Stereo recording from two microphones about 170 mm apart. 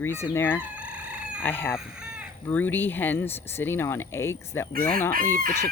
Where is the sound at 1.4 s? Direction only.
10° left (ahead or behind).